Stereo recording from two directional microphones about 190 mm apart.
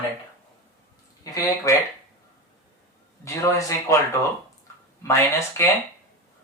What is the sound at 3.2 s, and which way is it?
Speech, 15° left (ahead or behind).